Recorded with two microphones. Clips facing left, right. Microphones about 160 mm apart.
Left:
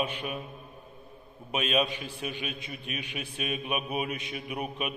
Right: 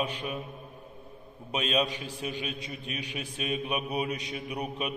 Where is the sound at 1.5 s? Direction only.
35° right (ahead or behind).